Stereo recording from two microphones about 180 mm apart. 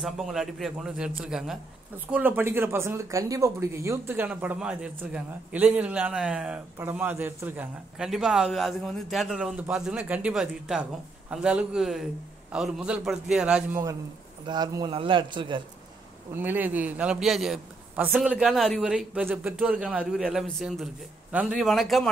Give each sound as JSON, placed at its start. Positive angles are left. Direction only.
{"t": 0.0, "sound": "a man's voice", "side_deg": 0}
{"t": 14.4, "sound": "a man's voice", "side_deg": -25}
{"t": 16.3, "sound": "a man's voice", "side_deg": -10}